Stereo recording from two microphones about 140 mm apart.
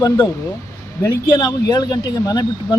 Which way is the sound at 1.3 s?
30° left (ahead or behind).